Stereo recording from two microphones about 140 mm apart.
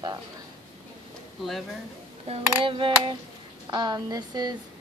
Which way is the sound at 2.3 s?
45° right (ahead or behind).